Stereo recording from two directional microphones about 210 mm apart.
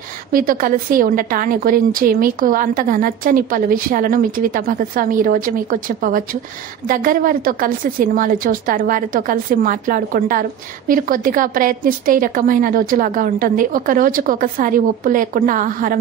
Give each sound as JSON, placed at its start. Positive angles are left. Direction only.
{"t": 0.3, "sound": "a woman's voice", "side_deg": -40}